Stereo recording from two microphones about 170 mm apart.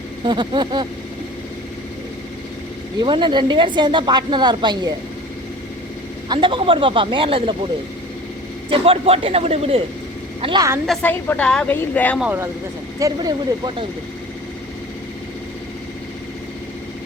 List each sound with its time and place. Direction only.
0.3 s a woman's voice: 25° right (ahead or behind)
3.0 s a woman's voice: 25° right (ahead or behind)
6.2 s a woman's voice: 30° right (ahead or behind)
8.7 s a man's voice: 35° right (ahead or behind)
11.0 s a woman's voice: 10° left (ahead or behind)
12.2 s speech: 10° right (ahead or behind)
13.0 s a woman's voice: 20° right (ahead or behind)